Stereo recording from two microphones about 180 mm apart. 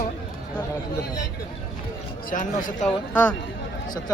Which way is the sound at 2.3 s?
45° left (ahead or behind).